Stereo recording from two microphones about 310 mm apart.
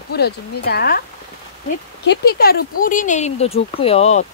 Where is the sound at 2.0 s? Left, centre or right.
Left.